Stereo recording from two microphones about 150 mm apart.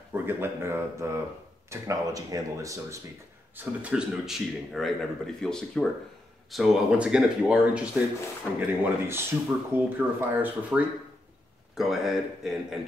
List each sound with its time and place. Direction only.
0.1 s speech: 15° right (ahead or behind)
3.5 s speech: 5° right (ahead or behind)
11.7 s speech: centre (ahead or behind)